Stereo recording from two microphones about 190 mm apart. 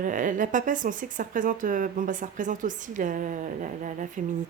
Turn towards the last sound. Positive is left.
turn(degrees=-40)  # may be behind; listen again after turning